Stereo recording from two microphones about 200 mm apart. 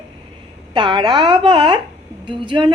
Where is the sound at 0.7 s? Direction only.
25° right (ahead or behind).